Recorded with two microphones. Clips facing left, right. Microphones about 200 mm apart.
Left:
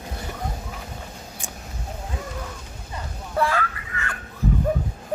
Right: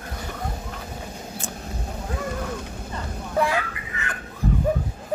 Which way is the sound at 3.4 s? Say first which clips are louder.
Even; 15° right (ahead or behind).